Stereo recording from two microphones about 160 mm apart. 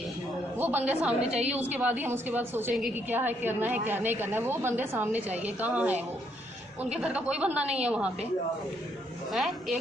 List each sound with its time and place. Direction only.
0.6 s a woman's voice: 10° right (ahead or behind)
1.2 s a woman's voice: 40° right (ahead or behind)
1.5 s a woman's voice: 10° right (ahead or behind)
9.3 s a woman's voice: centre (ahead or behind)